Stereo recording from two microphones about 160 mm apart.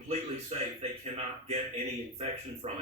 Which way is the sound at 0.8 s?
40° right (ahead or behind).